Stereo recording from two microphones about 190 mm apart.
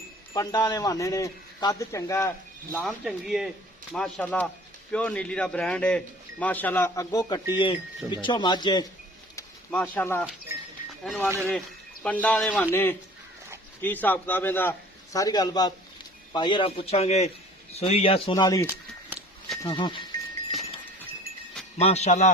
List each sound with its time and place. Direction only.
0.3 s a man's voice: 20° left (ahead or behind)
2.7 s a man's voice: 5° right (ahead or behind); by 8.9 s 20° left (ahead or behind)
9.3 s a sound: 10° left (ahead or behind)
10.8 s music: centre (ahead or behind)
12.0 s a man's voice: 5° left (ahead or behind); by 20.1 s 25° left (ahead or behind)
21.8 s a man's voice: 35° left (ahead or behind)